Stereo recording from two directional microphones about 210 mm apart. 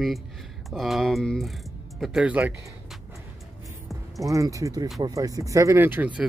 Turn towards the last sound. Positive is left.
turn(degrees=-10)  # may be behind; listen again after turning